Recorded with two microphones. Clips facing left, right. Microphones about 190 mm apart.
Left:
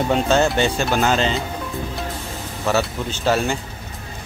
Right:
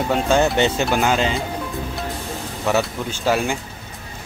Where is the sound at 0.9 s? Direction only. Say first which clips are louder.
Even; 10° right (ahead or behind).